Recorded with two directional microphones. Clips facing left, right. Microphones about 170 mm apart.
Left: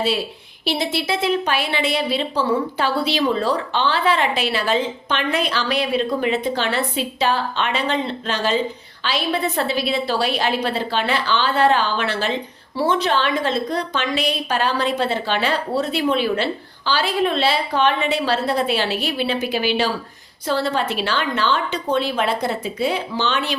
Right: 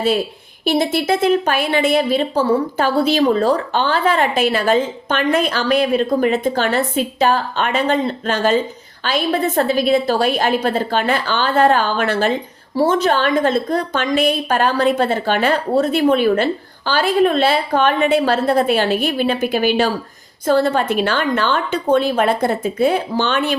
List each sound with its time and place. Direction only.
0.6 s a woman's voice: 50° right (ahead or behind)